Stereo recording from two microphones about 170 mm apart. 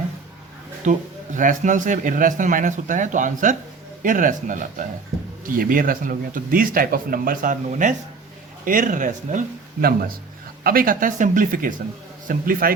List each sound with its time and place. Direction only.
0.9 s a man's voice: 50° right (ahead or behind)
9.8 s a man's voice: 60° right (ahead or behind)